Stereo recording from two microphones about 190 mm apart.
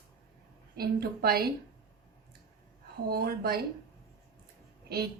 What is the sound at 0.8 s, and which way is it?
Speech, 55° right (ahead or behind).